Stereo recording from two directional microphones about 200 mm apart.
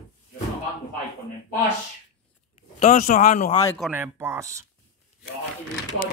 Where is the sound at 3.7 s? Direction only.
5° right (ahead or behind).